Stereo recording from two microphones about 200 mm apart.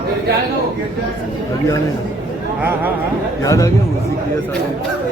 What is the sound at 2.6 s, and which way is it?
Speech, 10° right (ahead or behind).